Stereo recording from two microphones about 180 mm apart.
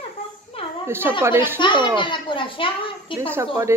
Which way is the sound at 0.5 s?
30° left (ahead or behind).